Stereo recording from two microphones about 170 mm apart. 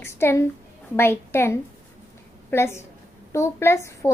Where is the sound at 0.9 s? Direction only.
15° left (ahead or behind).